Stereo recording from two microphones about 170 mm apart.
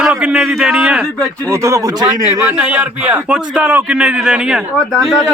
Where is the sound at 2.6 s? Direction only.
10° right (ahead or behind).